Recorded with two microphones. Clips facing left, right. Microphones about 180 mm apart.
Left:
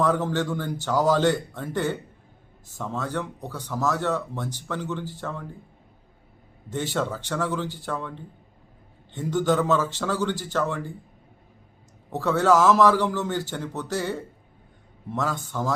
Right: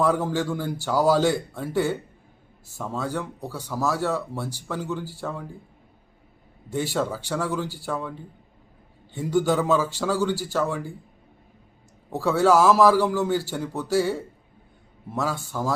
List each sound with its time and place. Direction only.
0.0 s speech: 10° right (ahead or behind)
6.7 s speech: 10° right (ahead or behind)
9.1 s speech: 10° right (ahead or behind)
12.1 s speech: 10° right (ahead or behind)